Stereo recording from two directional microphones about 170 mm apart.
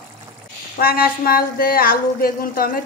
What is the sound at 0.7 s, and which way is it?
A woman's voice, 65° left (ahead or behind).